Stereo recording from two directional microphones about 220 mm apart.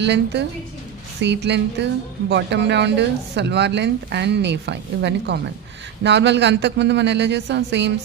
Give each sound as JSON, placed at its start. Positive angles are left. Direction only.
{"t": 0.0, "sound": "speech", "side_deg": -50}